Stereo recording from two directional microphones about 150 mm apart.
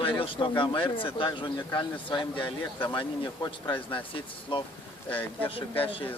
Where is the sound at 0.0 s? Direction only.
35° left (ahead or behind).